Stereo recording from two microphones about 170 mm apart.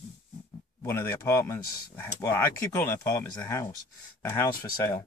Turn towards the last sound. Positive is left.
turn(degrees=20)  # may be behind; listen again after turning